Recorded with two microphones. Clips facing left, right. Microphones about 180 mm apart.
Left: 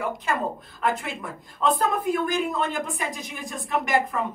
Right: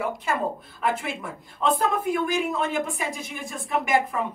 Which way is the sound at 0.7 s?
5° right (ahead or behind).